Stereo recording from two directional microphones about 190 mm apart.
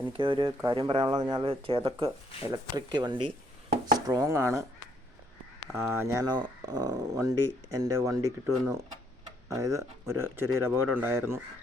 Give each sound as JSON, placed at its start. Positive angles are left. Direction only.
{"t": 0.1, "sound": "speech", "side_deg": -25}
{"t": 5.7, "sound": "speech", "side_deg": -15}